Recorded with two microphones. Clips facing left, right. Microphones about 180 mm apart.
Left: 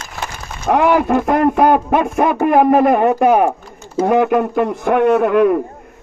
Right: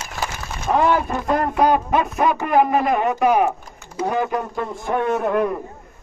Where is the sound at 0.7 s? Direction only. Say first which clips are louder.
Left 5 dB; 75° left (ahead or behind); by 3.5 s 50° left (ahead or behind).